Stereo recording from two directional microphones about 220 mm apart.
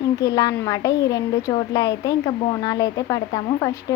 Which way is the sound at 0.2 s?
15° left (ahead or behind).